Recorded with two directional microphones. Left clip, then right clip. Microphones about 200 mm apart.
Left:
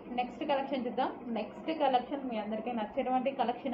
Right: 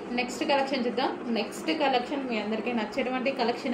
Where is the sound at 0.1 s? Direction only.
25° right (ahead or behind).